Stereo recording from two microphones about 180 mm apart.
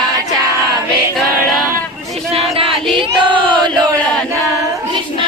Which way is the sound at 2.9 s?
25° right (ahead or behind).